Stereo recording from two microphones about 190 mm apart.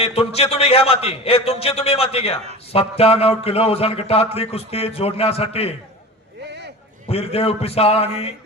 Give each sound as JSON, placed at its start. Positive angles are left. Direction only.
{"t": 0.0, "sound": "a man's voice", "side_deg": 30}
{"t": 7.1, "sound": "a man's voice", "side_deg": 30}